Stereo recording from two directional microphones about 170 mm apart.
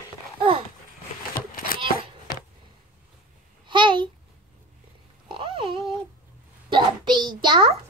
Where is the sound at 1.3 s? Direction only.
55° left (ahead or behind).